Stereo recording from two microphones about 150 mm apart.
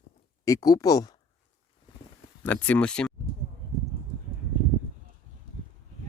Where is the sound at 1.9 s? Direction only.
35° left (ahead or behind).